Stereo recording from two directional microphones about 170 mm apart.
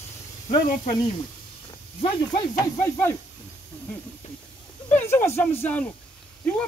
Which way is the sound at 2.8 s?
15° left (ahead or behind).